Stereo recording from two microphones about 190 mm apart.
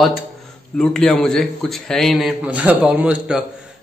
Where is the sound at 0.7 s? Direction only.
5° left (ahead or behind).